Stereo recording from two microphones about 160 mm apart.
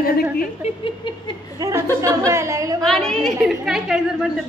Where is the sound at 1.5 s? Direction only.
20° right (ahead or behind).